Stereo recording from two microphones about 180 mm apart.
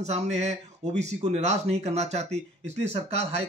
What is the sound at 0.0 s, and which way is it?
Speech, 40° right (ahead or behind).